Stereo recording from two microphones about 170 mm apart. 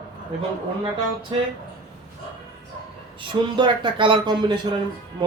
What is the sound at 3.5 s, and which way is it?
Speech, 30° right (ahead or behind).